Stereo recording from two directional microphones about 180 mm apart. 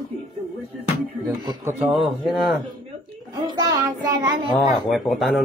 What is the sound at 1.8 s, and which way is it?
Speech, centre (ahead or behind).